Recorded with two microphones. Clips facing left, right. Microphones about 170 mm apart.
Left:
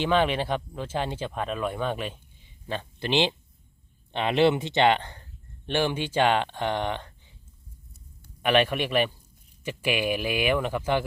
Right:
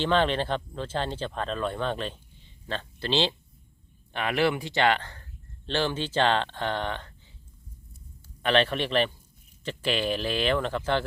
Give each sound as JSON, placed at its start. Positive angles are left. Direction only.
{"t": 0.0, "sound": "speech", "side_deg": 10}
{"t": 8.4, "sound": "speech", "side_deg": 15}